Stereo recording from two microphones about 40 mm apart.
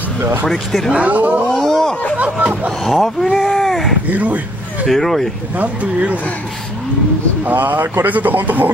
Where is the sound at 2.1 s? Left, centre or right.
Right.